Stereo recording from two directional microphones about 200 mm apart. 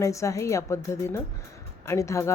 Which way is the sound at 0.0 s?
15° left (ahead or behind).